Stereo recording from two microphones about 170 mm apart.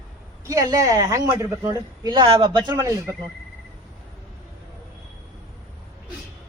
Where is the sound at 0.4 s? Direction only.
20° right (ahead or behind).